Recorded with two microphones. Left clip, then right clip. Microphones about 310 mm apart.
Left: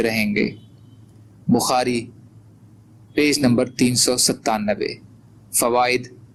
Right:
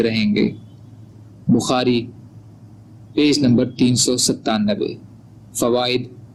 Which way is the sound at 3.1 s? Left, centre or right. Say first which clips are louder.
Right 1 dB; centre.